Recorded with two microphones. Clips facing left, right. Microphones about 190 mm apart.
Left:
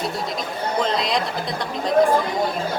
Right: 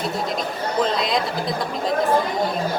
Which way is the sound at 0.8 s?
Centre (ahead or behind).